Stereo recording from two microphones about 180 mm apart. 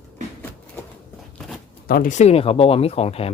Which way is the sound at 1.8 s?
55° left (ahead or behind).